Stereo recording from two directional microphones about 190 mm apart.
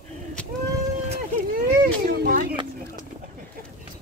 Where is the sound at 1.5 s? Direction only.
50° right (ahead or behind).